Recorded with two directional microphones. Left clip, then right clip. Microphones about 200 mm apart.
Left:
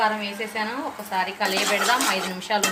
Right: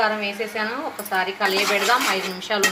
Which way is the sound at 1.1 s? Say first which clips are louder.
Right 3 dB; 15° left (ahead or behind).